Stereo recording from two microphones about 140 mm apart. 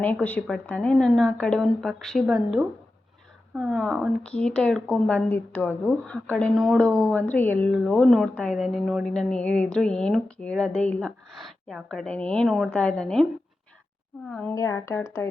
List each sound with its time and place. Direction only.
0.0 s a woman's voice: 10° left (ahead or behind); by 4.1 s 5° right (ahead or behind)
4.2 s a woman's voice: 5° left (ahead or behind)
14.3 s a woman's voice: 5° left (ahead or behind)
14.5 s speech: 20° left (ahead or behind)